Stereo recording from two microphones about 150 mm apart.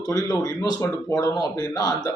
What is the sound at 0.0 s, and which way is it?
Speech, 25° left (ahead or behind).